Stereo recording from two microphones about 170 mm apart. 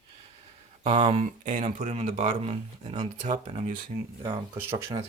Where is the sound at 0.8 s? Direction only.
30° right (ahead or behind).